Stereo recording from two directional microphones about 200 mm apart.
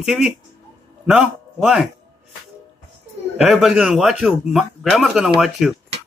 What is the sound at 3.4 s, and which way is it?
A man's voice, centre (ahead or behind).